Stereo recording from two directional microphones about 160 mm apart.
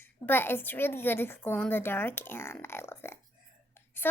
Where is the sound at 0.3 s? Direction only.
15° left (ahead or behind).